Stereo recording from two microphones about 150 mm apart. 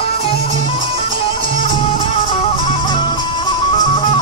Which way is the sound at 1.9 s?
35° left (ahead or behind).